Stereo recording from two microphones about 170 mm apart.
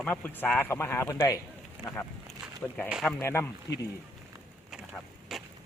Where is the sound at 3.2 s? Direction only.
15° left (ahead or behind).